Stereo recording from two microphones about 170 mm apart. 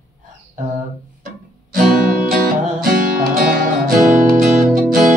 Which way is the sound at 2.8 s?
60° right (ahead or behind).